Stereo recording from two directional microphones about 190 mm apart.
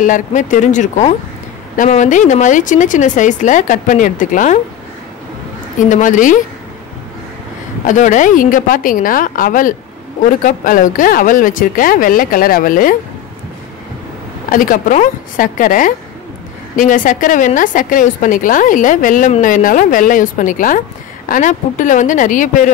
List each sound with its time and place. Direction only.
0.0 s speech: 45° left (ahead or behind)
5.9 s a woman's voice: 40° left (ahead or behind)
7.8 s a woman's voice: 40° left (ahead or behind)
14.5 s a woman's voice: 45° left (ahead or behind)